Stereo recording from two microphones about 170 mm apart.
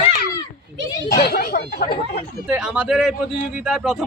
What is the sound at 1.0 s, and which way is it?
Chatter, 70° left (ahead or behind).